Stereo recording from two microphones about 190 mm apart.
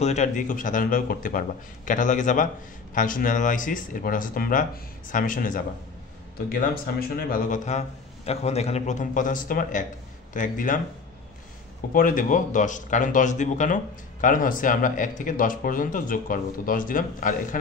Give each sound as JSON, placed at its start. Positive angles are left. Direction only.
{"t": 0.0, "sound": "a man's voice", "side_deg": 35}
{"t": 11.9, "sound": "speech", "side_deg": 45}